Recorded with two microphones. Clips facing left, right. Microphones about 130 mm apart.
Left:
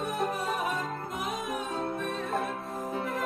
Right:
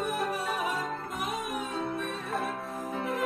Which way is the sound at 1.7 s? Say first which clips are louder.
Left 1 dB; 40° left (ahead or behind).